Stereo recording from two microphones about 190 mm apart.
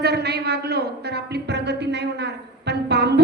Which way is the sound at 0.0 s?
60° right (ahead or behind).